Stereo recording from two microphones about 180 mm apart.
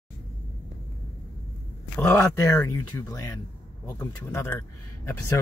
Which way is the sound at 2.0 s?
15° left (ahead or behind).